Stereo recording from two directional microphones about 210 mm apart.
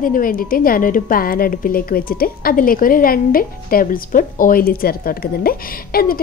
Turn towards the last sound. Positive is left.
turn(degrees=45)  # may be behind; listen again after turning